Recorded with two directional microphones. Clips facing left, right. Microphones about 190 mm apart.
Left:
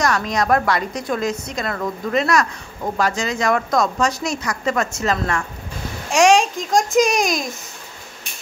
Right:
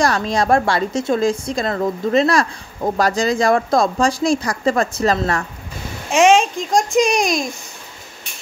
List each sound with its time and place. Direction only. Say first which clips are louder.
0.0 s a woman's voice: right 2 dB; 30° right (ahead or behind)
6.0 s a child's voice: right 1 dB; centre (ahead or behind)